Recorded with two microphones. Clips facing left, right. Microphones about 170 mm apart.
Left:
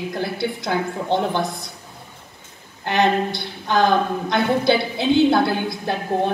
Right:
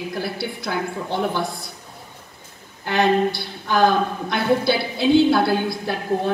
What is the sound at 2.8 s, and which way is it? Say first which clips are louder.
A woman's voice: right 1 dB; 20° left (ahead or behind).